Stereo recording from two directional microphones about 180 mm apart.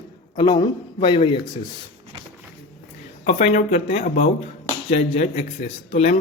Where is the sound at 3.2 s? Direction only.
35° left (ahead or behind).